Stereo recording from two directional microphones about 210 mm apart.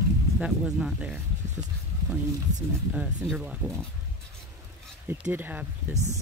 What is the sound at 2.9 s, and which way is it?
Speech, 5° right (ahead or behind).